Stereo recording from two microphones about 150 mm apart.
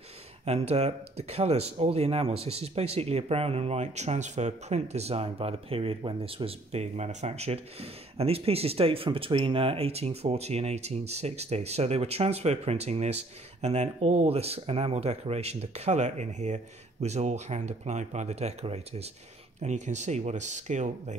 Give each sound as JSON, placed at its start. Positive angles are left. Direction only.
{"t": 0.5, "sound": "speech", "side_deg": -45}